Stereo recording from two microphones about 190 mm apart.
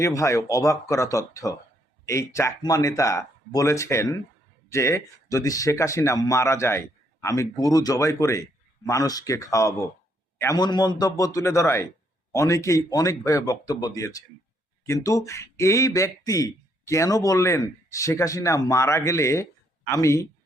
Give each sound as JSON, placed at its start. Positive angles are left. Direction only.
{"t": 0.0, "sound": "speech", "side_deg": 15}